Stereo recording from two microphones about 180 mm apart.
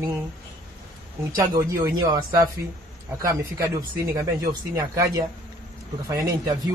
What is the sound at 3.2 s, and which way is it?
Speech, 20° right (ahead or behind).